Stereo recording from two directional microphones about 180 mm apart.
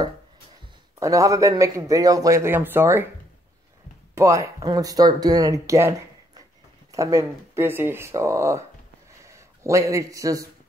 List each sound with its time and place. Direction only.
0.9 s a man's voice: 15° right (ahead or behind)
4.1 s a man's voice: 15° right (ahead or behind)